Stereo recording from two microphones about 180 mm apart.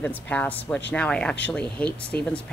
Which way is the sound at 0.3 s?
10° left (ahead or behind).